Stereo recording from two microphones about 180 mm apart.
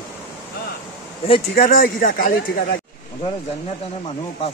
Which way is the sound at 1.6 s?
50° left (ahead or behind).